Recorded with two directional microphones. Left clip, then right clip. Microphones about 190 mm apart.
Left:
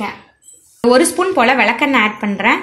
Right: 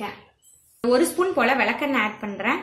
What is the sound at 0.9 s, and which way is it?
A woman's voice, 45° left (ahead or behind).